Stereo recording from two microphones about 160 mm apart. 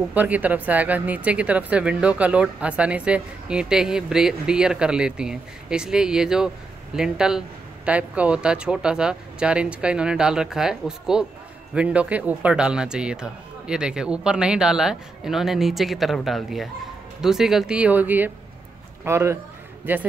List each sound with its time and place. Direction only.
0.1 s speech: 10° right (ahead or behind)